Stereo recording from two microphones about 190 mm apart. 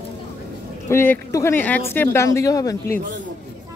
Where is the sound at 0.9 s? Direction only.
15° left (ahead or behind).